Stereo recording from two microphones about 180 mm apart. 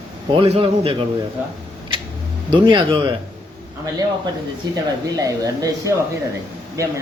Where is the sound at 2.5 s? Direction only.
25° right (ahead or behind).